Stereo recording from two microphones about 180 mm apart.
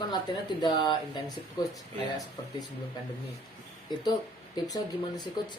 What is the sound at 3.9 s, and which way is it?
Speech, 25° left (ahead or behind).